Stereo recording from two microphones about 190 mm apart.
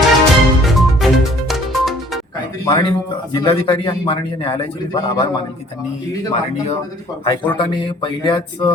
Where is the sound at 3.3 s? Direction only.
25° left (ahead or behind).